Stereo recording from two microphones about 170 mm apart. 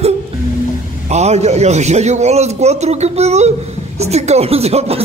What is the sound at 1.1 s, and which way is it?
A man's voice, 40° right (ahead or behind).